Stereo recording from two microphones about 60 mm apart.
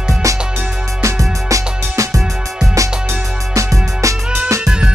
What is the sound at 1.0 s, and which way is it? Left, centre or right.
Music, right.